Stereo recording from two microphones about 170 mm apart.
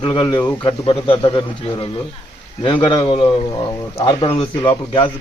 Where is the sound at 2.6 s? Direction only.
30° left (ahead or behind).